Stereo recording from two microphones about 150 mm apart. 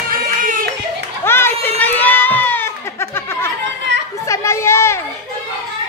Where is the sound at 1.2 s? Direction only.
15° left (ahead or behind).